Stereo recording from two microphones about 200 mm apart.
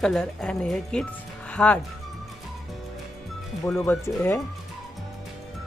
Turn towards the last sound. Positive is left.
turn(degrees=15)  # may be behind; listen again after turning